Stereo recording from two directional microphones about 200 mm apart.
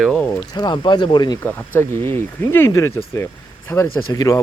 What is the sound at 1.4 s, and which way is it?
Speech, 10° left (ahead or behind).